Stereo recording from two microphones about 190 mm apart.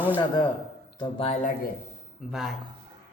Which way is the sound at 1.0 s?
30° left (ahead or behind).